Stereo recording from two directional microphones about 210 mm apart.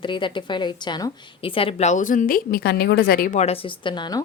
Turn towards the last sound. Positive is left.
turn(degrees=20)  # may be behind; listen again after turning